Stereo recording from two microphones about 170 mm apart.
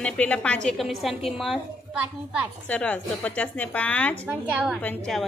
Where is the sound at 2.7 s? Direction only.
5° left (ahead or behind).